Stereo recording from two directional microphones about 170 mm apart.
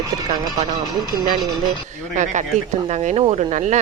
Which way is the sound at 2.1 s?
45° right (ahead or behind).